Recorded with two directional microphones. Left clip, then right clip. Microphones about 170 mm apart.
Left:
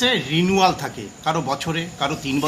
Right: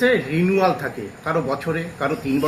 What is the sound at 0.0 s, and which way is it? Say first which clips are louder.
Speech: right 1 dB; 60° left (ahead or behind).